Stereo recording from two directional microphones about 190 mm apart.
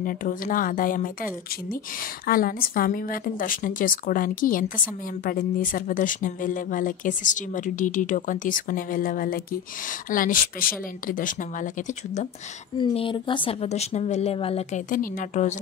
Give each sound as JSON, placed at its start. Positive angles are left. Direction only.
{"t": 0.0, "sound": "speech", "side_deg": 45}
{"t": 12.7, "sound": "speech", "side_deg": 25}
{"t": 14.9, "sound": "speech", "side_deg": 45}